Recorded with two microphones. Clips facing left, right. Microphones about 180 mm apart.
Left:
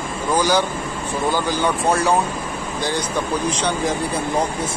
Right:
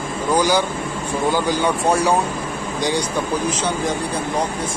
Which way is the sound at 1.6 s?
10° right (ahead or behind).